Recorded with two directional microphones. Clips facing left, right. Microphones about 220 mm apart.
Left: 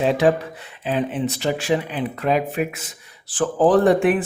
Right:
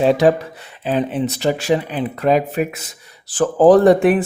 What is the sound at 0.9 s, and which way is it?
Speech, 40° right (ahead or behind).